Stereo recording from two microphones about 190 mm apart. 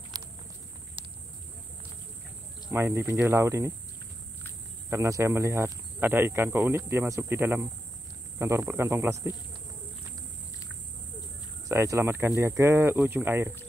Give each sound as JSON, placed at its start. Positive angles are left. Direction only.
{"t": 0.1, "sound": "a sound", "side_deg": -20}
{"t": 2.7, "sound": "speech", "side_deg": -10}
{"t": 4.8, "sound": "speech", "side_deg": -15}
{"t": 11.7, "sound": "speech", "side_deg": -15}